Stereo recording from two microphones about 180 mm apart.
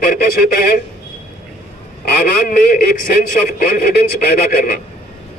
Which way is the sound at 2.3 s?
55° left (ahead or behind).